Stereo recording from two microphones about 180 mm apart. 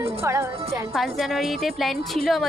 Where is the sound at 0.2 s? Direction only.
15° right (ahead or behind).